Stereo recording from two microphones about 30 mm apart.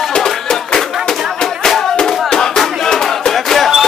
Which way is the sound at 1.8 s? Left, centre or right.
Centre.